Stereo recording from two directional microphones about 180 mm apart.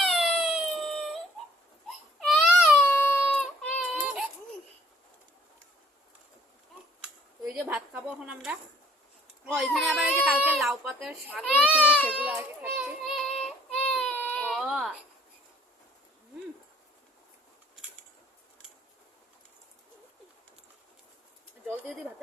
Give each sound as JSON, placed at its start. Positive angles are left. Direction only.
{"t": 0.0, "sound": "a sound", "side_deg": 0}
{"t": 2.2, "sound": "baby cry", "side_deg": 0}
{"t": 2.8, "sound": "a sound", "side_deg": 10}
{"t": 7.5, "sound": "a child's voice", "side_deg": -5}
{"t": 9.6, "sound": "a child's voice", "side_deg": 0}
{"t": 13.1, "sound": "child singing", "side_deg": 0}
{"t": 13.4, "sound": "baby cry", "side_deg": 5}